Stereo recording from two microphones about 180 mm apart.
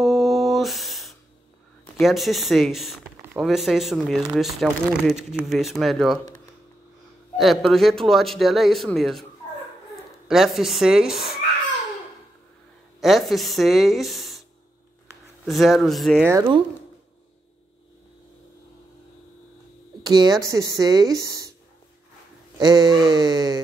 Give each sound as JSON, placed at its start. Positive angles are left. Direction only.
{"t": 0.0, "sound": "a sound", "side_deg": 0}
{"t": 2.0, "sound": "speech", "side_deg": 0}
{"t": 7.3, "sound": "speech", "side_deg": 0}
{"t": 10.2, "sound": "speech", "side_deg": 0}
{"t": 13.0, "sound": "speech", "side_deg": 0}
{"t": 15.4, "sound": "speech", "side_deg": 0}
{"t": 16.3, "sound": "speech", "side_deg": -20}
{"t": 20.0, "sound": "speech", "side_deg": -20}
{"t": 22.6, "sound": "speech", "side_deg": -20}